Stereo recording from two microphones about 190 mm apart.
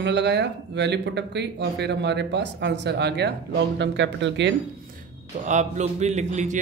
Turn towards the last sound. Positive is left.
turn(degrees=-40)  # may be behind; listen again after turning